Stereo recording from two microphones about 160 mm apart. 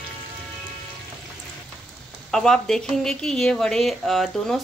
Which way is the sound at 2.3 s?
5° left (ahead or behind).